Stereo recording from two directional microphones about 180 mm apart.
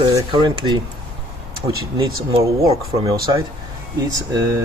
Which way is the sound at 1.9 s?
20° right (ahead or behind).